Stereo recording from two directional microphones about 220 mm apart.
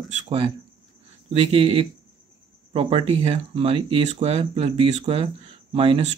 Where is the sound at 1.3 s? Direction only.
25° right (ahead or behind).